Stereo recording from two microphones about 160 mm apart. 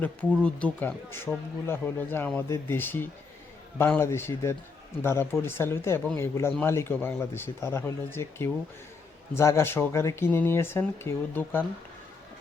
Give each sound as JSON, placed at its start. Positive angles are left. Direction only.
{"t": 0.4, "sound": "speech", "side_deg": 10}